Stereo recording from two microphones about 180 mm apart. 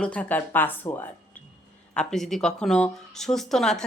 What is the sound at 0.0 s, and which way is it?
Speech, 5° left (ahead or behind).